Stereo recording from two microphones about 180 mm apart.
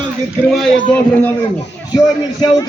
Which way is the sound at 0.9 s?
10° left (ahead or behind).